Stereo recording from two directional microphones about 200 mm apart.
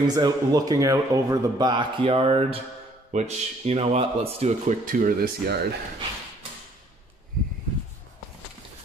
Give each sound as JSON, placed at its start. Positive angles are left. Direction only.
{"t": 0.0, "sound": "speech", "side_deg": -20}